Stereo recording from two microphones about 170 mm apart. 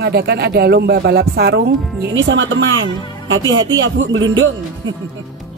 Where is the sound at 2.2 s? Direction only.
90° right.